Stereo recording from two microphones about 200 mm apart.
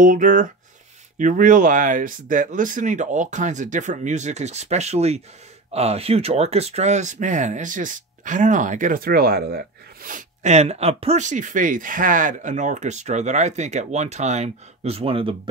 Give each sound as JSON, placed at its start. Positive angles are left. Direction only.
{"t": 0.0, "sound": "speech", "side_deg": -40}